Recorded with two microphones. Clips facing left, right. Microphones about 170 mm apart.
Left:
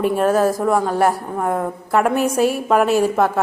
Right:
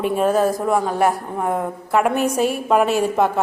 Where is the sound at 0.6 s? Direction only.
10° right (ahead or behind).